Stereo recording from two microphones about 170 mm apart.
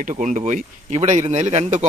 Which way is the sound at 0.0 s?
45° right (ahead or behind).